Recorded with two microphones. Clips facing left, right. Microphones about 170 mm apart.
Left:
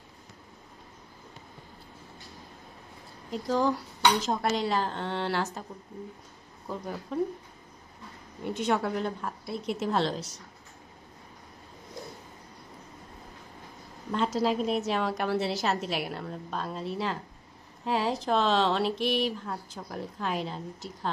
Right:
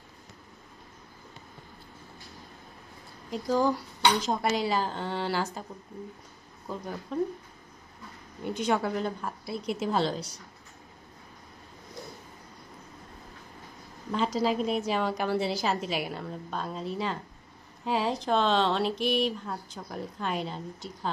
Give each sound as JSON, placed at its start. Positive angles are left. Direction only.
{"t": 3.3, "sound": "speech", "side_deg": 0}
{"t": 6.7, "sound": "speech", "side_deg": 0}
{"t": 8.4, "sound": "speech", "side_deg": 0}
{"t": 14.3, "sound": "speech", "side_deg": 0}